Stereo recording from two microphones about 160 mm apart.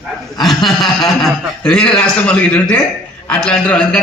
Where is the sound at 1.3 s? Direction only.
5° left (ahead or behind).